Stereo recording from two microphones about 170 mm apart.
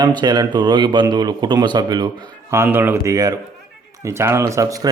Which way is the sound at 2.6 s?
10° right (ahead or behind).